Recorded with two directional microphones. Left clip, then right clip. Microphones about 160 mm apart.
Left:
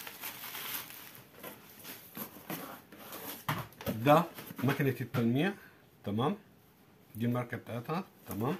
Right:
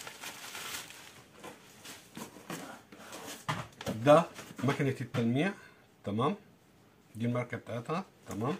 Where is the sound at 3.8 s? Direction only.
20° left (ahead or behind).